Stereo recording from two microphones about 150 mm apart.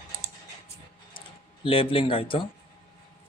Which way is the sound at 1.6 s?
35° left (ahead or behind).